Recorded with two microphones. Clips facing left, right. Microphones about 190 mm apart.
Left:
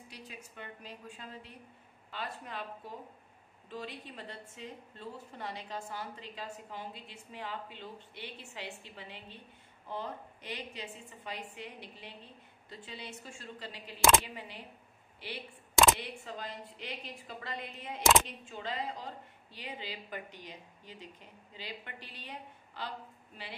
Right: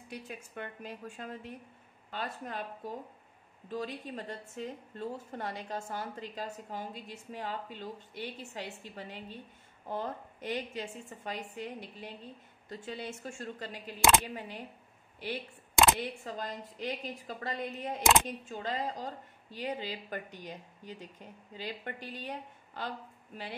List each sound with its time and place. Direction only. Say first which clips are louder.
0.1 s a woman's voice: right 9 dB; 50° right (ahead or behind)